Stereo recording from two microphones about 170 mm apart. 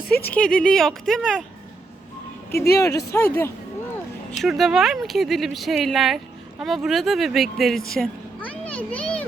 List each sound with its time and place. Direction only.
0.0 s speech: 65° left (ahead or behind)
0.3 s speech: 5° left (ahead or behind)
2.7 s speech: 20° left (ahead or behind)
4.4 s speech: centre (ahead or behind)